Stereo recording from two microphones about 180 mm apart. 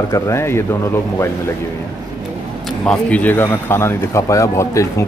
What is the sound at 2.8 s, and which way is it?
Speech, 10° left (ahead or behind).